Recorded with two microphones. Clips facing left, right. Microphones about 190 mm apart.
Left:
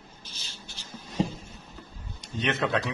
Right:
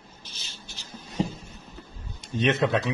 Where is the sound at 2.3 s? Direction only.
20° right (ahead or behind).